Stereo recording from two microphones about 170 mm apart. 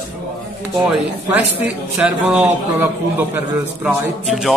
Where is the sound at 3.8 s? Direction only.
Centre (ahead or behind).